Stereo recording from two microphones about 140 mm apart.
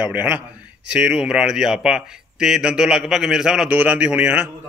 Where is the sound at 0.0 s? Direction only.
10° right (ahead or behind).